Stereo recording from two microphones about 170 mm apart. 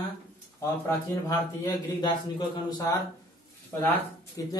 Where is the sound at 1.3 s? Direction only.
25° left (ahead or behind).